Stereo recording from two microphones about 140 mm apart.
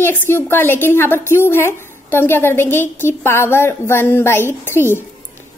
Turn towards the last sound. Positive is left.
turn(degrees=15)  # may be behind; listen again after turning